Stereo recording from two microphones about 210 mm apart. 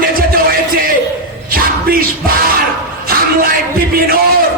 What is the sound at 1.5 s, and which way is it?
Music, 45° right (ahead or behind).